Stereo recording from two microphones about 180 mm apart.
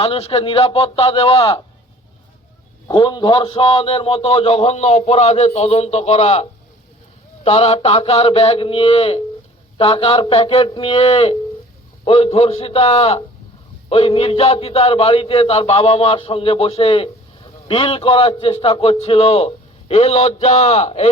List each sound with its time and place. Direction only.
0.0 s speech: 30° left (ahead or behind)
2.8 s speech: 25° left (ahead or behind)